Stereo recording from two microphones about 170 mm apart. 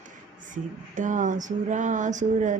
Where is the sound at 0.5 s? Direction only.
50° right (ahead or behind).